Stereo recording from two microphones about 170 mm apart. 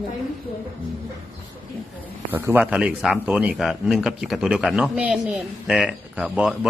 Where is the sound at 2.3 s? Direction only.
10° right (ahead or behind).